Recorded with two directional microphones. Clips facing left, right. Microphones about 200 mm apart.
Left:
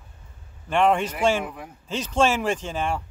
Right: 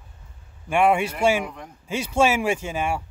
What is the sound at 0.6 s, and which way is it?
Speech, 10° right (ahead or behind).